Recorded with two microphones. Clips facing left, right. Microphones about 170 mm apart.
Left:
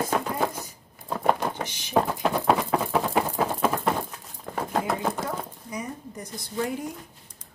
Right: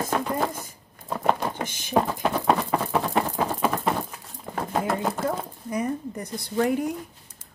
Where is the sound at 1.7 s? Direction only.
50° right (ahead or behind).